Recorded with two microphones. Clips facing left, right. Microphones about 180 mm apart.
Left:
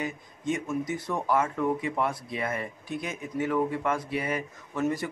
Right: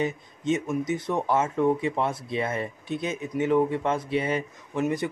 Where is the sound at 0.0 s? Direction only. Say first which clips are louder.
Right 5 dB; 20° right (ahead or behind).